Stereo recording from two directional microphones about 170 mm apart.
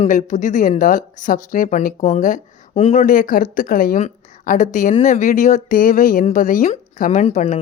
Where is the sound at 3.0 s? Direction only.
50° left (ahead or behind).